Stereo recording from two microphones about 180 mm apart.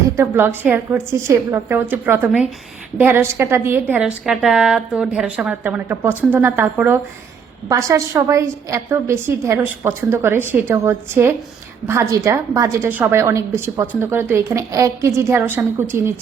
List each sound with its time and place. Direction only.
0.2 s a woman's voice: 15° right (ahead or behind)